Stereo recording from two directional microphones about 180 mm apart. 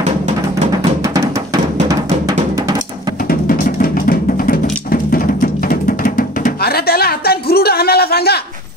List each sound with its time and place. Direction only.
1.0 s music: 20° right (ahead or behind)
3.3 s music: 55° left (ahead or behind)